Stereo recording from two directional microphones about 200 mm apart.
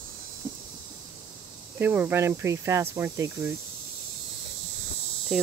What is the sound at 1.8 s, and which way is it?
Speech, 10° right (ahead or behind).